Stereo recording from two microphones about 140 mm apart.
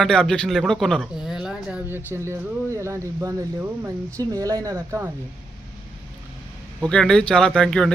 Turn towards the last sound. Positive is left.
turn(degrees=5)  # may be behind; listen again after turning